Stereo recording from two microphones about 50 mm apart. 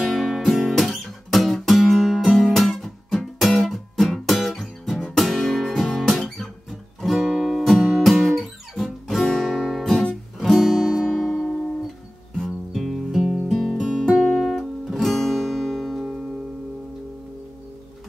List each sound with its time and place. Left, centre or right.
0.0 s music: centre
5.1 s guitar: centre
10.4 s music: centre
12.7 s music: centre
13.6 s music: centre
14.2 s guitar: centre